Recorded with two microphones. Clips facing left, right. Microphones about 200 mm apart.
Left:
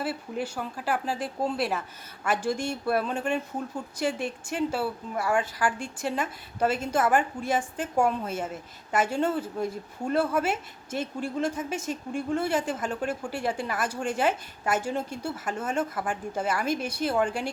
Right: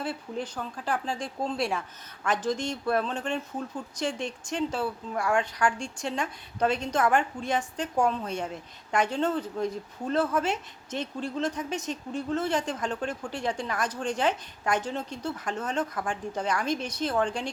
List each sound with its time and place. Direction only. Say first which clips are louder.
0.0 s a woman's voice: left 2 dB; 5° left (ahead or behind)